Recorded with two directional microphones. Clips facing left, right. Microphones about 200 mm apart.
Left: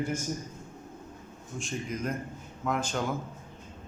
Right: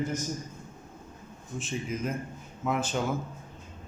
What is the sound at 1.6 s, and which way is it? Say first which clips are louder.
Speech: right 1 dB; 5° right (ahead or behind).